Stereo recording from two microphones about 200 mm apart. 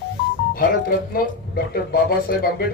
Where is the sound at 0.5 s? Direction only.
45° left (ahead or behind).